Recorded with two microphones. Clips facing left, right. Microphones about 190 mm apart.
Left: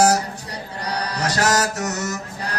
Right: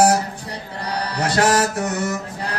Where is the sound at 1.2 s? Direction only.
30° right (ahead or behind).